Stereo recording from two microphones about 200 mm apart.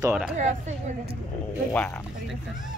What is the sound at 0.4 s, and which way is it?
Speech, 35° right (ahead or behind).